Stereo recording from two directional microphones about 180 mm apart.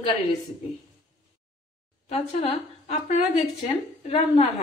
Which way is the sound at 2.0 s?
35° left (ahead or behind).